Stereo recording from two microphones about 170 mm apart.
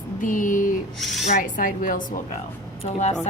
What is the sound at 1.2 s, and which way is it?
Speech, 50° left (ahead or behind).